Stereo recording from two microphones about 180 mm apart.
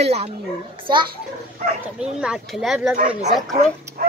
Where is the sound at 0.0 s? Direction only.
35° right (ahead or behind).